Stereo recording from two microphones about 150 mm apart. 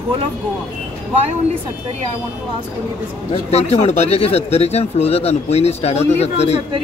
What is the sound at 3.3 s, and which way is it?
Speech, 45° left (ahead or behind).